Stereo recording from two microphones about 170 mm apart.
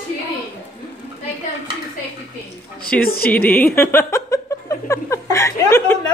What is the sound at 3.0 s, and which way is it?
Speech, 60° left (ahead or behind).